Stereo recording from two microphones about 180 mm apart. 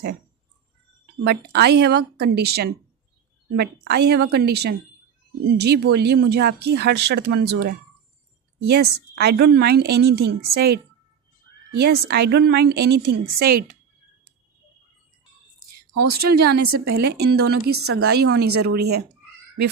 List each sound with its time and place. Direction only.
1.2 s a woman's voice: 65° right (ahead or behind)
16.1 s a woman's voice: 60° right (ahead or behind)